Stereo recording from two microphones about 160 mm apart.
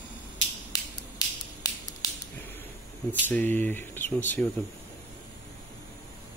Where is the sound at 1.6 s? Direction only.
20° left (ahead or behind).